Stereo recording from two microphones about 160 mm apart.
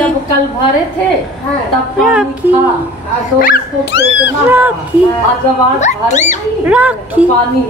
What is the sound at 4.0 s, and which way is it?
Speech, 10° right (ahead or behind).